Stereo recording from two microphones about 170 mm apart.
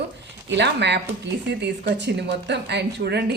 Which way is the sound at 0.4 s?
90° right.